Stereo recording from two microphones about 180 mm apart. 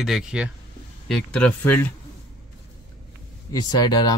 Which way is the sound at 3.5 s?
20° left (ahead or behind).